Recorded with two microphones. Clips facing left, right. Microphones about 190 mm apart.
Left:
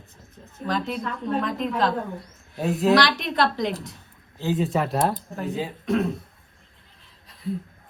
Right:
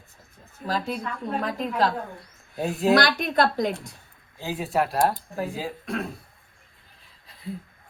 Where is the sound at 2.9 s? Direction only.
50° right (ahead or behind).